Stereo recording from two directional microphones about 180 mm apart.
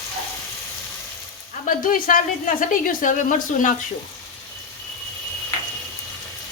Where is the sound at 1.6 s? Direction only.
50° left (ahead or behind).